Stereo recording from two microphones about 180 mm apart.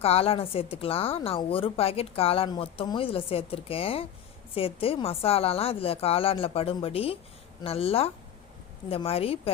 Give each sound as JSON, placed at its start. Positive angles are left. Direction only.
{"t": 0.0, "sound": "a woman's voice", "side_deg": 35}